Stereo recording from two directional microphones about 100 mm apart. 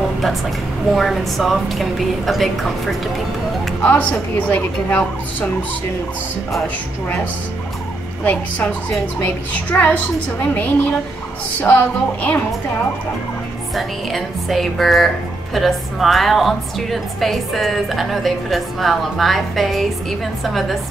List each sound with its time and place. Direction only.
0.9 s a woman's voice: centre (ahead or behind)
3.8 s a woman's voice: 15° left (ahead or behind)
8.2 s a woman's voice: 15° left (ahead or behind)
13.7 s a woman's voice: centre (ahead or behind)